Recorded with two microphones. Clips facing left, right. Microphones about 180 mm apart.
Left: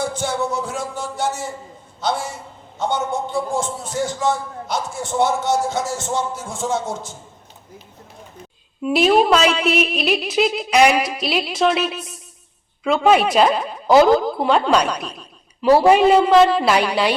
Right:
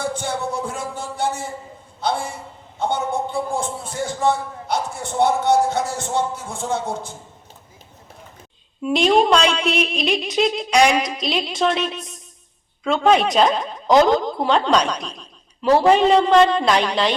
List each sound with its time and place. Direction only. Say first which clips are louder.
0.0 s music: left 2 dB; 55° right (ahead or behind)
2.0 s a man's voice: even; 55° right (ahead or behind)
8.8 s speech: left 1 dB; 5° left (ahead or behind)